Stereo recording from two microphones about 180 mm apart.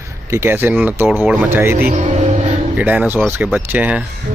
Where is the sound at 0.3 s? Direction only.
15° right (ahead or behind).